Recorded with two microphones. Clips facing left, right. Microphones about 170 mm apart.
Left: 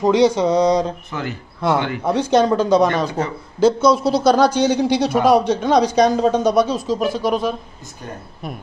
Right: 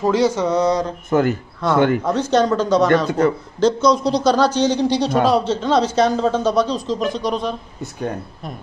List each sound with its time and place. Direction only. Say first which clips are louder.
0.0 s a man's voice: left 2 dB; 15° left (ahead or behind)
1.1 s speech: right 16 dB; 50° right (ahead or behind)
2.0 s a man's voice: left 1 dB; 10° left (ahead or behind)
3.1 s a man's voice: right 6 dB; 55° right (ahead or behind)
3.5 s a man's voice: left 4 dB; 10° left (ahead or behind)